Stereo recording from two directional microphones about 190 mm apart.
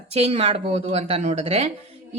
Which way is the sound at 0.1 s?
35° right (ahead or behind).